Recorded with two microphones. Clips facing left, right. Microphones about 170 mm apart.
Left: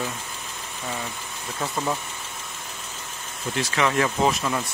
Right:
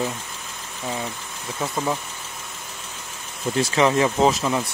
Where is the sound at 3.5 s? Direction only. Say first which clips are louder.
Right 4 dB; 30° right (ahead or behind).